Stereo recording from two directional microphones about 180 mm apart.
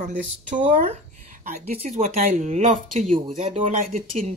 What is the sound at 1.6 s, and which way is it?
Speech, 35° right (ahead or behind).